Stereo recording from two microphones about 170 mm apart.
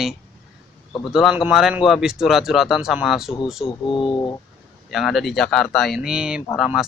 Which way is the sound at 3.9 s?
30° left (ahead or behind).